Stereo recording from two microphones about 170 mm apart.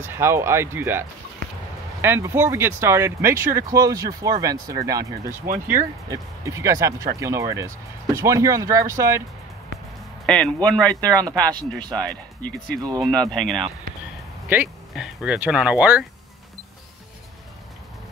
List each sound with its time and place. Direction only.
0.1 s speech: 15° right (ahead or behind)
10.2 s speech: 5° left (ahead or behind)
11.1 s speech: 20° right (ahead or behind)
11.4 s speech: 5° left (ahead or behind)
12.4 s speech: 55° left (ahead or behind)
12.8 s speech: 25° right (ahead or behind)
13.1 s speech: 5° left (ahead or behind)